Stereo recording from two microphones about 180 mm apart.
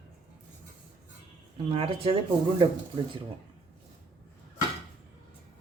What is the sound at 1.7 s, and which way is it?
Speech, 30° right (ahead or behind).